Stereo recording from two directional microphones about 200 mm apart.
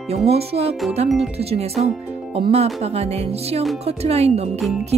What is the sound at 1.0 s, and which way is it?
Speech, centre (ahead or behind).